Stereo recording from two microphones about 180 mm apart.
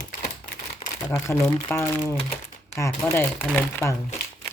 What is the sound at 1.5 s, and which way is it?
Speech, 15° left (ahead or behind).